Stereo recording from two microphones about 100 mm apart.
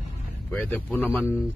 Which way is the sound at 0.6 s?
15° left (ahead or behind).